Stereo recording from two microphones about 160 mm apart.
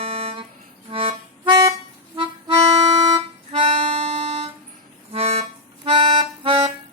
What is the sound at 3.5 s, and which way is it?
Harmonica, 40° right (ahead or behind).